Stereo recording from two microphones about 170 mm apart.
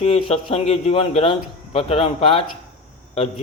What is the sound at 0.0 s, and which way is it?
A man's voice, 35° left (ahead or behind).